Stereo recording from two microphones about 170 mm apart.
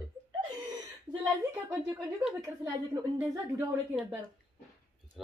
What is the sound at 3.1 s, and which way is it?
Speech, 5° right (ahead or behind).